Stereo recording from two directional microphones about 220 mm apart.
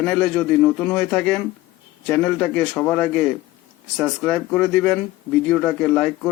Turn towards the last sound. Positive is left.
turn(degrees=5)  # may be behind; listen again after turning